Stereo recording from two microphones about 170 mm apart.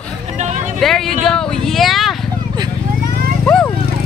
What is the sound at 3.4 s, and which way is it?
Vehicle, 5° left (ahead or behind).